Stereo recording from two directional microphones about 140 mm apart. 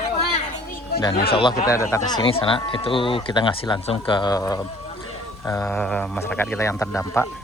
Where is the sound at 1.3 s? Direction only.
40° left (ahead or behind).